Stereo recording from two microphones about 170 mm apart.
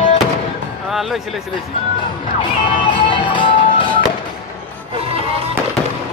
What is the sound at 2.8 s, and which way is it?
Music, 30° left (ahead or behind).